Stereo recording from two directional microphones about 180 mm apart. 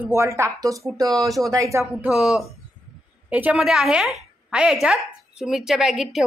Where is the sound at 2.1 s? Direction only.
Centre (ahead or behind).